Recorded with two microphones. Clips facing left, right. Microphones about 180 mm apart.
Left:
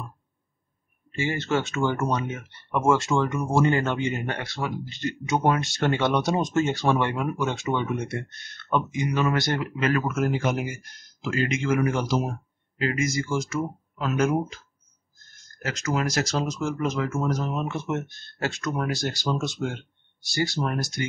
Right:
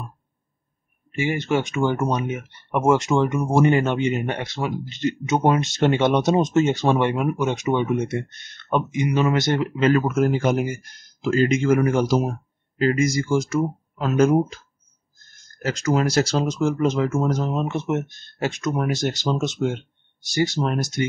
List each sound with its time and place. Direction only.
1.1 s speech: 15° right (ahead or behind); by 14.6 s 35° right (ahead or behind)
15.6 s speech: 35° right (ahead or behind)